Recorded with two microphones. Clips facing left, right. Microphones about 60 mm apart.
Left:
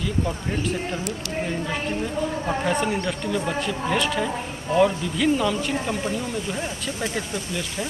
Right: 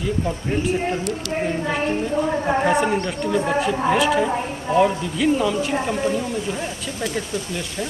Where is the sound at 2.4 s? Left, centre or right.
Right.